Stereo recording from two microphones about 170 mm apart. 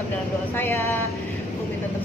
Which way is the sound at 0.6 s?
15° left (ahead or behind).